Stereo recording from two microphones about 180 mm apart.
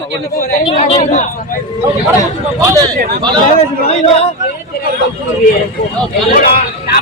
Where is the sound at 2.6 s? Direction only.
20° right (ahead or behind).